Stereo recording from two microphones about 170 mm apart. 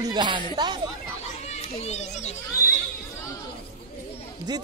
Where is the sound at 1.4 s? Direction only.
40° left (ahead or behind).